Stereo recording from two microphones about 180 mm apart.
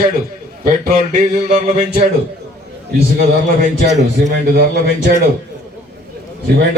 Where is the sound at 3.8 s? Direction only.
70° right (ahead or behind).